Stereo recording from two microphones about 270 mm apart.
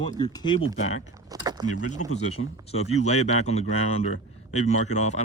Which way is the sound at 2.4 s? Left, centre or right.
Left.